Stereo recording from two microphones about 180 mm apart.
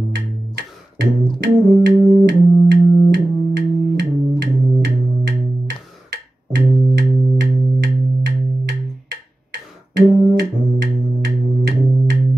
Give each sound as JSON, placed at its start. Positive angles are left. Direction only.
{"t": 0.1, "sound": "music", "side_deg": -65}